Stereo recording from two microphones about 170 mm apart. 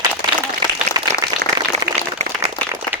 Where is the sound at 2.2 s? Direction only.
40° right (ahead or behind).